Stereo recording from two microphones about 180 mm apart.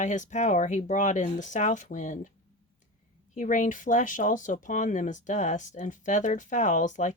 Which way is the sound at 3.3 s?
45° left (ahead or behind).